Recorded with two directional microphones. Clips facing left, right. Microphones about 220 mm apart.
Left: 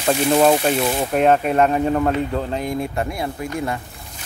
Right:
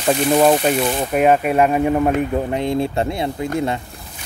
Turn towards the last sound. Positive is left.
turn(degrees=-25)  # may be behind; listen again after turning